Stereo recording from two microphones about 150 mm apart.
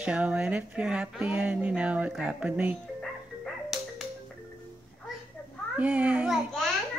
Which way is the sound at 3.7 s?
Centre (ahead or behind).